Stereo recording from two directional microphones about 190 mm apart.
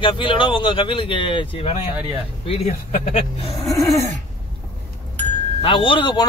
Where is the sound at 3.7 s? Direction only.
15° left (ahead or behind).